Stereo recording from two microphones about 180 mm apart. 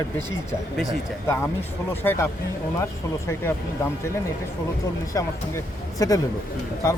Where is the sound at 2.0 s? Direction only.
15° left (ahead or behind).